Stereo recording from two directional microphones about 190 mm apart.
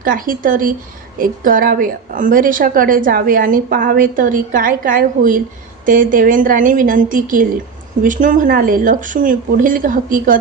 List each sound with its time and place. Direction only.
0.0 s a woman's voice: 45° right (ahead or behind)